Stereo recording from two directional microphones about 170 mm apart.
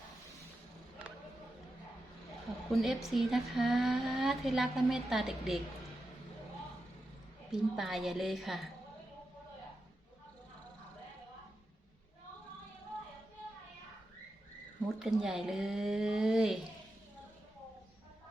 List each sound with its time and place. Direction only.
2.7 s speech: centre (ahead or behind)
7.5 s speech: centre (ahead or behind)
14.8 s speech: centre (ahead or behind)